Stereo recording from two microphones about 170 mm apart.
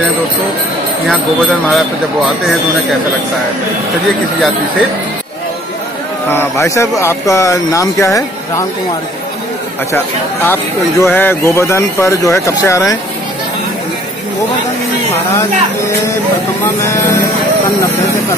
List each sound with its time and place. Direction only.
1.7 s speech: centre (ahead or behind)
6.3 s speech: 15° left (ahead or behind)
9.9 s speech: 15° left (ahead or behind)
16.6 s speech: 15° left (ahead or behind)